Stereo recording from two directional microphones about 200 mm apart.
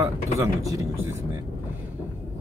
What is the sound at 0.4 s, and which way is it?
Speech, 15° right (ahead or behind).